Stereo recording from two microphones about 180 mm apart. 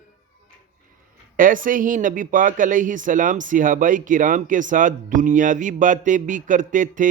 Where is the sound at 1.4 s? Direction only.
50° right (ahead or behind).